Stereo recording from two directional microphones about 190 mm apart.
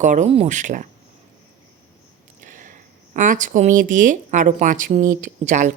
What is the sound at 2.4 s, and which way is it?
Speech, 40° right (ahead or behind).